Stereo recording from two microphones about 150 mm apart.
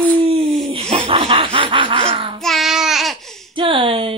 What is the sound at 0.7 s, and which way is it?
Snicker, 40° right (ahead or behind).